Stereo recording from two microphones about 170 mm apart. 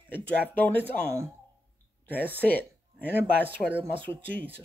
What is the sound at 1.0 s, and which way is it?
Speech, 15° right (ahead or behind).